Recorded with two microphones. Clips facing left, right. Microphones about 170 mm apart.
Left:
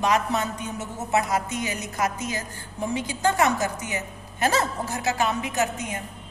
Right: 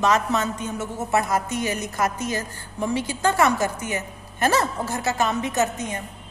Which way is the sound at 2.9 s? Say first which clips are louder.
Right 1 dB; 15° left (ahead or behind).